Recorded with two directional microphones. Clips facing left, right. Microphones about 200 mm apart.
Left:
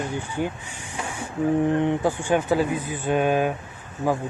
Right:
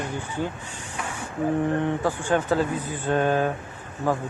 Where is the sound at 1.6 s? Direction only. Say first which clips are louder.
Left 3 dB; 15° left (ahead or behind).